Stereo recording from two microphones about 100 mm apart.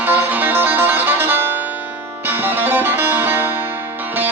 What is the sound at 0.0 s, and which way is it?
Music, 20° right (ahead or behind).